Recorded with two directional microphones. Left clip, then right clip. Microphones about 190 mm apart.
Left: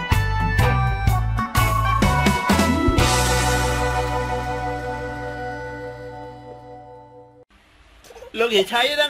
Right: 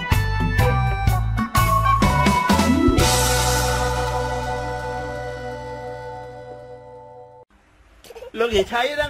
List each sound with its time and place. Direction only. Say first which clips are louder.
0.0 s music: left 1 dB; centre (ahead or behind)
8.3 s bird: left 1 dB; 15° right (ahead or behind)
8.7 s speech: left 2 dB; 5° right (ahead or behind)